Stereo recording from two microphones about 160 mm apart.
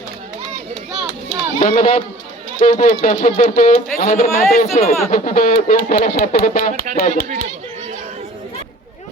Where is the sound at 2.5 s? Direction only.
55° left (ahead or behind).